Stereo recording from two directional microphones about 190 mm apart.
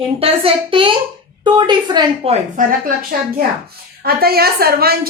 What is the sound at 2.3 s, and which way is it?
Speech, 45° right (ahead or behind).